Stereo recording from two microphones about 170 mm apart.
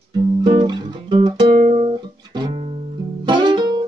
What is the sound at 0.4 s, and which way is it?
Music, 30° right (ahead or behind).